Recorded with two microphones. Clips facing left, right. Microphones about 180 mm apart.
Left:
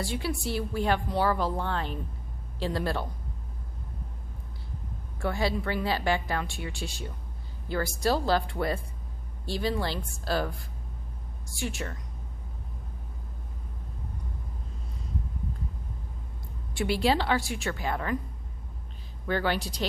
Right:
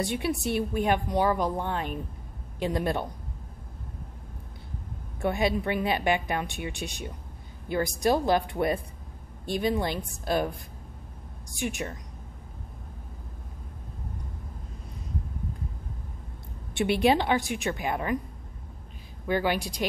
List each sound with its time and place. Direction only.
0.0 s a woman's voice: 20° right (ahead or behind)
5.2 s a woman's voice: 20° right (ahead or behind)
11.5 s a woman's voice: 20° right (ahead or behind)
16.7 s a woman's voice: 20° right (ahead or behind)
19.2 s a woman's voice: 15° right (ahead or behind)